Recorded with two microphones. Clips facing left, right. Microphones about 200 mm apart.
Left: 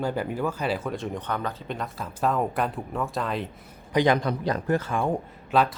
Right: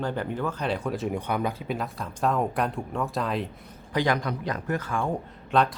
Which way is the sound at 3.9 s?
20° left (ahead or behind).